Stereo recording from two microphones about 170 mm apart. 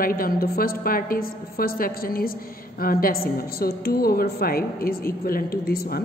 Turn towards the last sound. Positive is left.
turn(degrees=60)  # may be behind; listen again after turning